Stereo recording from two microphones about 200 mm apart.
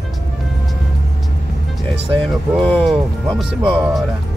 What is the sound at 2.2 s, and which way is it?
Speech, 5° left (ahead or behind).